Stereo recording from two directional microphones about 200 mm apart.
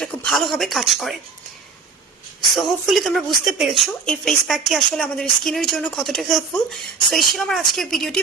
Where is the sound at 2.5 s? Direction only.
Centre (ahead or behind).